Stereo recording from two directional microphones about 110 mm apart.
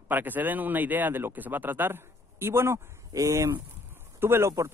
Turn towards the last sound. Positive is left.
turn(degrees=-25)  # may be behind; listen again after turning